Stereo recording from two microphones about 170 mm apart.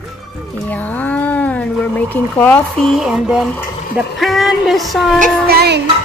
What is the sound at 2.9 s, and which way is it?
Speech, centre (ahead or behind).